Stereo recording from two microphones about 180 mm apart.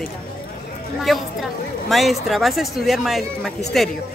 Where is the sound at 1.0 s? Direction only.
Centre (ahead or behind).